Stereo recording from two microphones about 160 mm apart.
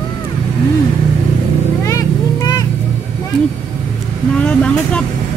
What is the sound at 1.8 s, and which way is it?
Vehicle, 20° left (ahead or behind).